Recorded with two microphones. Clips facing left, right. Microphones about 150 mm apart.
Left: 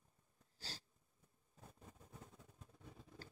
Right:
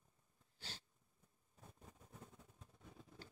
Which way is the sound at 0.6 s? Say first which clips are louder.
Left 2 dB; 40° left (ahead or behind).